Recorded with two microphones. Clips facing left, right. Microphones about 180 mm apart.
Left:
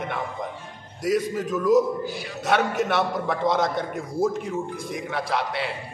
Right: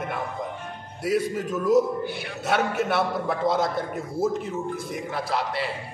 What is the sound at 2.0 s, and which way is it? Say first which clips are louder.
Speech: even; 60° right (ahead or behind).